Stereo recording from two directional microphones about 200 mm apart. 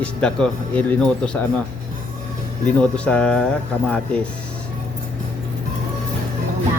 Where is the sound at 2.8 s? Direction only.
5° left (ahead or behind).